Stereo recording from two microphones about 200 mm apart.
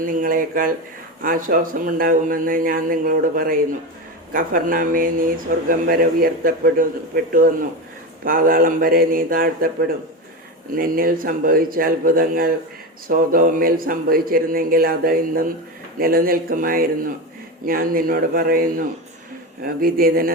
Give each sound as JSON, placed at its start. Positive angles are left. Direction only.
{"t": 0.0, "sound": "a man's voice", "side_deg": -45}
{"t": 8.2, "sound": "a man's voice", "side_deg": -45}
{"t": 10.7, "sound": "a man's voice", "side_deg": -45}